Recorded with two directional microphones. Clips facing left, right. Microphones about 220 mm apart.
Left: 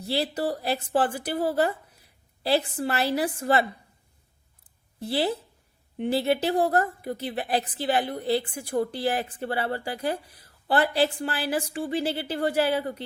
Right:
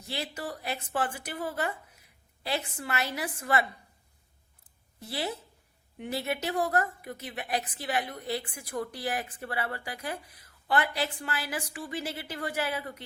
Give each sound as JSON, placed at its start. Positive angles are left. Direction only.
{"t": 0.0, "sound": "a woman's voice", "side_deg": 35}
{"t": 4.9, "sound": "a woman's voice", "side_deg": 30}